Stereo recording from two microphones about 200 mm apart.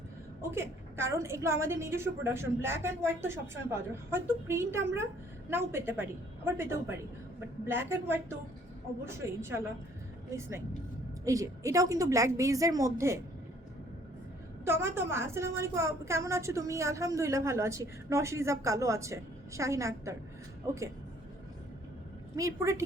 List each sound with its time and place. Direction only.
0.5 s a woman's voice: 15° right (ahead or behind)
14.6 s a woman's voice: 15° right (ahead or behind)
22.4 s a woman's voice: 15° right (ahead or behind)